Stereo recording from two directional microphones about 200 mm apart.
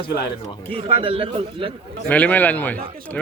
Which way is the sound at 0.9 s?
30° right (ahead or behind).